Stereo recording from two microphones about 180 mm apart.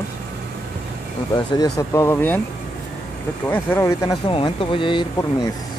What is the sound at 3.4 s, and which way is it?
Speech, 15° left (ahead or behind).